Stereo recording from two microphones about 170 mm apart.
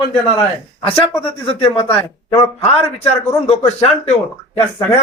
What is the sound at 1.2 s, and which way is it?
A man's voice, 30° left (ahead or behind).